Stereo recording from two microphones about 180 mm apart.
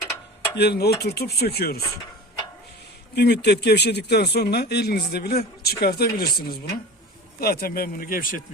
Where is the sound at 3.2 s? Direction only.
65° left (ahead or behind).